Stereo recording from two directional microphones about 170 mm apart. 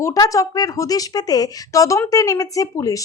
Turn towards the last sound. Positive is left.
turn(degrees=20)  # may be behind; listen again after turning